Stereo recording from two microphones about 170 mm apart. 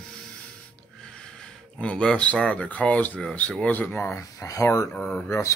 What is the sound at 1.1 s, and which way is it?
Speech, 5° left (ahead or behind).